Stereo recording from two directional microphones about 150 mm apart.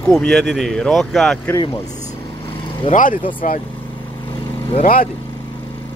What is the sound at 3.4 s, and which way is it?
Speech, 60° left (ahead or behind).